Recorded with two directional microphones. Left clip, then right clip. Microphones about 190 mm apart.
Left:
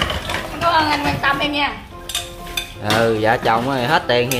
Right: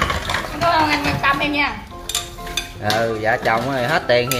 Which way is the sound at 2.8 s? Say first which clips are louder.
Left 3 dB; 5° left (ahead or behind).